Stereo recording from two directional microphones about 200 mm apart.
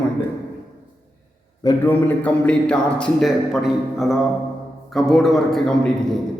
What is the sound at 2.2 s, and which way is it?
A man's voice, 5° left (ahead or behind).